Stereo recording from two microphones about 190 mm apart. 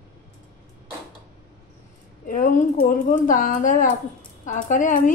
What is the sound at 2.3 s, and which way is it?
A woman's voice, 45° left (ahead or behind).